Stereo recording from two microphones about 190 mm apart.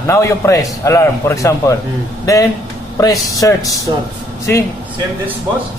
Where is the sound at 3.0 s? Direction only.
20° left (ahead or behind).